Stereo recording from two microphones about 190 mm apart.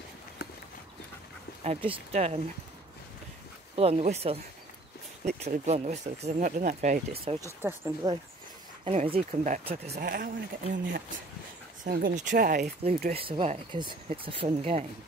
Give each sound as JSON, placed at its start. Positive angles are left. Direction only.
{"t": 1.6, "sound": "speech", "side_deg": -30}
{"t": 3.7, "sound": "speech", "side_deg": -35}
{"t": 7.6, "sound": "speech", "side_deg": -10}
{"t": 9.1, "sound": "speech", "side_deg": -40}
{"t": 9.9, "sound": "speech", "side_deg": -50}
{"t": 11.8, "sound": "speech", "side_deg": -45}
{"t": 12.8, "sound": "speech", "side_deg": -30}